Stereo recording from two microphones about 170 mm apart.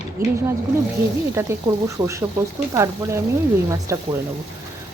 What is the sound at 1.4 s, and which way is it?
A woman's voice, 20° right (ahead or behind).